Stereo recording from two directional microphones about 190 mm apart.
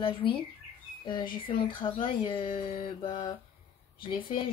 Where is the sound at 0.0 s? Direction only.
25° left (ahead or behind).